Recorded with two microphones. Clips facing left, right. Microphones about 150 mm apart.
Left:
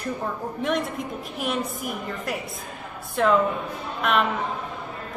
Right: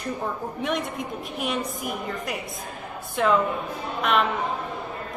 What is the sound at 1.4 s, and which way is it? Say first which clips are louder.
A woman's voice: left 1 dB; centre (ahead or behind).